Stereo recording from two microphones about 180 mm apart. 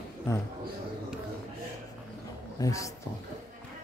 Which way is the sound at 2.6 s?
20° left (ahead or behind).